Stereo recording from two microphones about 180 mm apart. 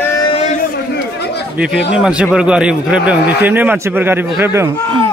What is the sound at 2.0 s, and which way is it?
A man's voice, 5° right (ahead or behind).